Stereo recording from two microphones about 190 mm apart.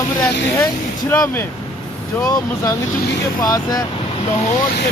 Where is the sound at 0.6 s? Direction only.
10° left (ahead or behind).